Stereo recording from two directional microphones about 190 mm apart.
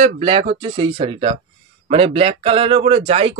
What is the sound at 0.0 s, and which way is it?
A man's voice, 30° right (ahead or behind).